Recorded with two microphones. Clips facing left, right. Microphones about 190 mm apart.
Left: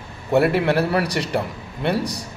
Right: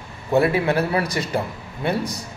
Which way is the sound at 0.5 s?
70° left (ahead or behind).